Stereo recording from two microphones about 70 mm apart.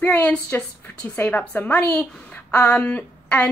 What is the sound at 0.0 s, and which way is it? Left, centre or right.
Speech, centre.